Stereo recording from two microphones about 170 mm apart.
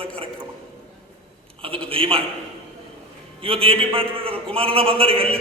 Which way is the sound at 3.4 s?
35° right (ahead or behind).